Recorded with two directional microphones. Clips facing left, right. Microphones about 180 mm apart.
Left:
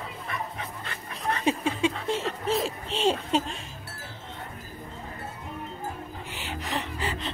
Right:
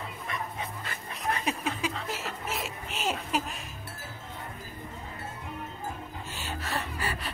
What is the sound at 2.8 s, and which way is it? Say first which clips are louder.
Speech: left 6 dB; 30° left (ahead or behind).